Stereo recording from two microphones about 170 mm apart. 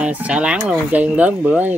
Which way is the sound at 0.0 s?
5° right (ahead or behind).